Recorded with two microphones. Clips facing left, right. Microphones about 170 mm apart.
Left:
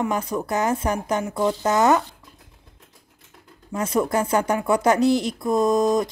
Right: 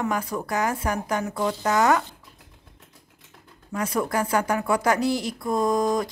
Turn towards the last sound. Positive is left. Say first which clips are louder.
# left 3 dB
turn(degrees=20)  # may be behind; listen again after turning